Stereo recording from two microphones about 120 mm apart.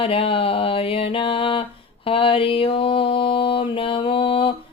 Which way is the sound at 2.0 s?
50° left (ahead or behind).